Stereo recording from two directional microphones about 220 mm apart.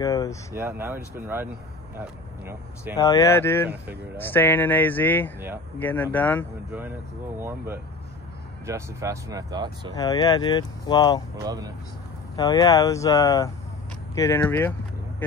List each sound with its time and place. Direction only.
0.0 s speech: 15° left (ahead or behind)
0.6 s speech: 10° right (ahead or behind)
3.0 s speech: 15° left (ahead or behind)
7.3 s speech: 10° right (ahead or behind)
9.9 s speech: 15° left (ahead or behind)
11.4 s speech: 15° right (ahead or behind)
12.4 s speech: 15° left (ahead or behind)